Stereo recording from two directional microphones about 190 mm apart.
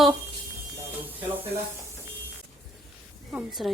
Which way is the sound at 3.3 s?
5° right (ahead or behind).